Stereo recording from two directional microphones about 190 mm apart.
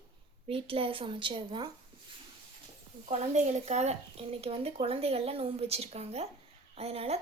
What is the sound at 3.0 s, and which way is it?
Speech, 35° right (ahead or behind).